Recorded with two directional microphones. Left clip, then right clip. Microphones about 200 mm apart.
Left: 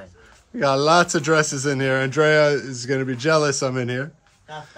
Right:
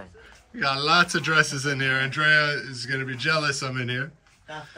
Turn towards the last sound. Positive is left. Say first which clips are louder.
# left 5 dB
turn(degrees=10)  # may be behind; listen again after turning